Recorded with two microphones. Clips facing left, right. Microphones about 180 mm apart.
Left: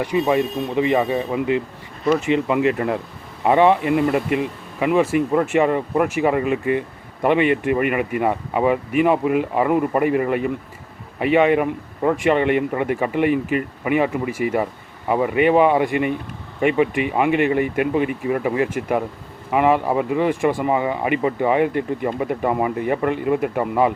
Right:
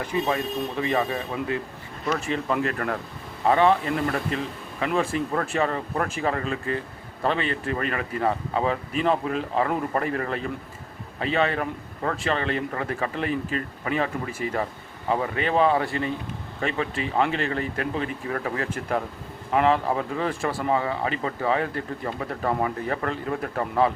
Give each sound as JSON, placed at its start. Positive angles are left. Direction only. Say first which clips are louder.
{"t": 0.0, "sound": "speech", "louder": "left 7 dB", "side_deg": 15}